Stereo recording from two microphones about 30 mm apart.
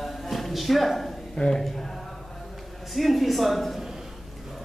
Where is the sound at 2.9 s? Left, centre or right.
Centre.